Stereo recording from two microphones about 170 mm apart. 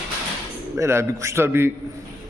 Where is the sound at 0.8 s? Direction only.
15° right (ahead or behind).